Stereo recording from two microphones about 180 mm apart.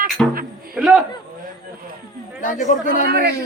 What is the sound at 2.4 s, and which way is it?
Speech, 45° left (ahead or behind).